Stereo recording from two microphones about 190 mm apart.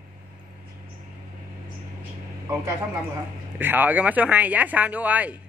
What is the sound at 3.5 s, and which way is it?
Speech, 10° right (ahead or behind).